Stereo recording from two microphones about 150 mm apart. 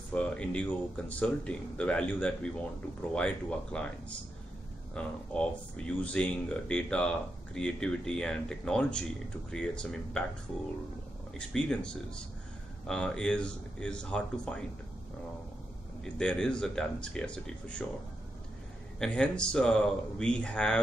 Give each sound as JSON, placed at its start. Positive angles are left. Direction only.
{"t": 0.1, "sound": "speech", "side_deg": 10}
{"t": 4.9, "sound": "speech", "side_deg": 5}
{"t": 11.3, "sound": "speech", "side_deg": 5}
{"t": 16.0, "sound": "speech", "side_deg": 5}
{"t": 18.9, "sound": "speech", "side_deg": 5}